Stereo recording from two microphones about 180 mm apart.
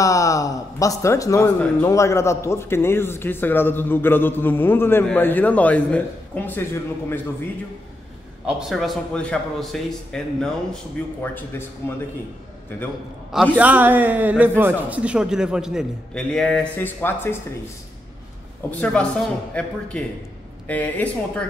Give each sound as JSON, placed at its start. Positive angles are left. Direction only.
{"t": 0.0, "sound": "a sound", "side_deg": 20}
{"t": 1.6, "sound": "a man's voice", "side_deg": 15}
{"t": 8.5, "sound": "a man's voice", "side_deg": 0}
{"t": 12.7, "sound": "a man's voice", "side_deg": 15}
{"t": 13.3, "sound": "a man's voice", "side_deg": 0}
{"t": 18.7, "sound": "a man's voice", "side_deg": 5}